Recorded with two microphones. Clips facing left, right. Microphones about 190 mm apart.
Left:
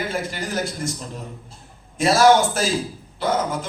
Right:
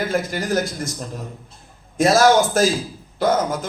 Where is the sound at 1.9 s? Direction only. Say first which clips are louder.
Right 1 dB; 45° right (ahead or behind).